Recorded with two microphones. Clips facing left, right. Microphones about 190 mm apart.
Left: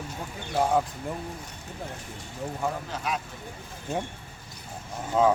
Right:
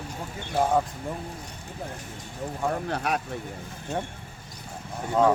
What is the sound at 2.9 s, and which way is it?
Speech, 60° right (ahead or behind).